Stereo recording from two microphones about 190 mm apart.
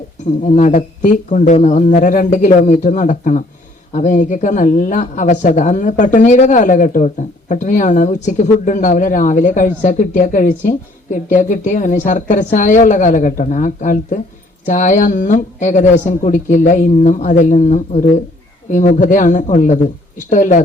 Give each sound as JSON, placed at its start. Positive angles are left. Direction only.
{"t": 0.3, "sound": "speech", "side_deg": 40}